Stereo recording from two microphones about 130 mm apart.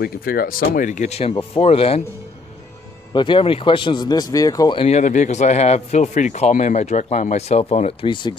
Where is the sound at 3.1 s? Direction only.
35° left (ahead or behind).